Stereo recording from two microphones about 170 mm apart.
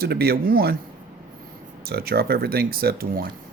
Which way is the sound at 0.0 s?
65° right (ahead or behind).